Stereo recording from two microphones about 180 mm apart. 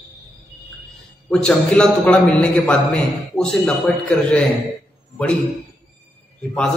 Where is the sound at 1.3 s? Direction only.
5° left (ahead or behind).